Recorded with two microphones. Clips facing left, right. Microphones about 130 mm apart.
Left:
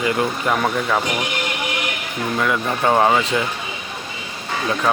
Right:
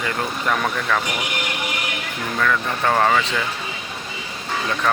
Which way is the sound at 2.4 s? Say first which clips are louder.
Left 1 dB; 15° left (ahead or behind).